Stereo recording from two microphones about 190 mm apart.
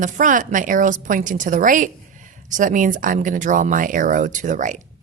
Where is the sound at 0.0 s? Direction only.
40° right (ahead or behind).